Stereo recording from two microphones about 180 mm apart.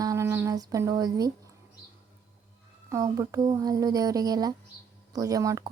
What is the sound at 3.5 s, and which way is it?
Speech, 20° right (ahead or behind).